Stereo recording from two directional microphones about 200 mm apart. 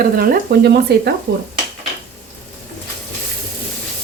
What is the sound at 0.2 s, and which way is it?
Speech, 55° right (ahead or behind).